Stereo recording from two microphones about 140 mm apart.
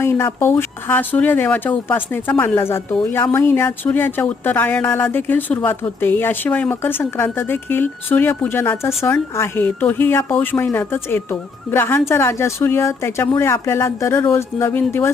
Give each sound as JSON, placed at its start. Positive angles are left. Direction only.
{"t": 0.0, "sound": "speech", "side_deg": 15}